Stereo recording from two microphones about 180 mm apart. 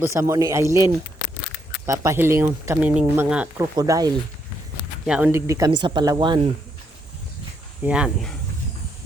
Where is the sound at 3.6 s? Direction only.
20° right (ahead or behind).